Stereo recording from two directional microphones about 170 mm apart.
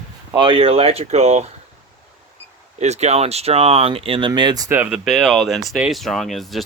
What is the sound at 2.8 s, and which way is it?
Speech, 40° right (ahead or behind).